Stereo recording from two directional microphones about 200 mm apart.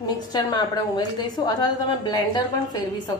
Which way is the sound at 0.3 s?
20° left (ahead or behind).